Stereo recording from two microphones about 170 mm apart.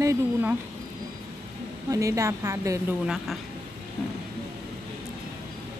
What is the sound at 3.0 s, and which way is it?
Speech, 5° right (ahead or behind).